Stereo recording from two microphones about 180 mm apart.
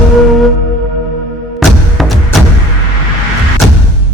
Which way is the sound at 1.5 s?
Centre (ahead or behind).